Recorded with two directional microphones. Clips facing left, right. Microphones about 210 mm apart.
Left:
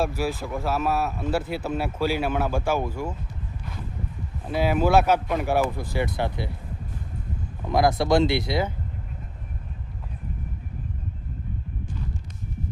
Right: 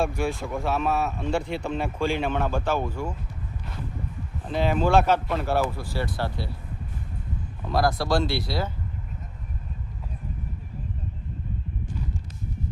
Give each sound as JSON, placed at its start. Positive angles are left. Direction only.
{"t": 0.0, "sound": "speech", "side_deg": 5}
{"t": 4.4, "sound": "speech", "side_deg": 10}
{"t": 7.7, "sound": "speech", "side_deg": 20}